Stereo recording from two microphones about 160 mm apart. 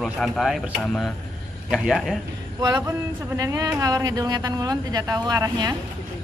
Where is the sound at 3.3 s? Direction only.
20° right (ahead or behind).